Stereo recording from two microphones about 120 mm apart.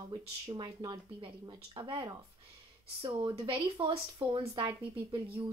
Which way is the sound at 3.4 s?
45° right (ahead or behind).